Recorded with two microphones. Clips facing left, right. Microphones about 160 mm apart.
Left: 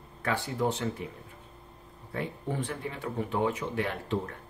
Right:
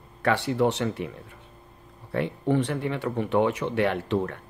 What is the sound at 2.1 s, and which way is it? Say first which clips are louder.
Speech: right 9 dB; 70° right (ahead or behind).